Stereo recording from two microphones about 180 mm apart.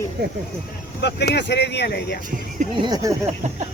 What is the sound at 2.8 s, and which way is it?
Speech, 25° right (ahead or behind).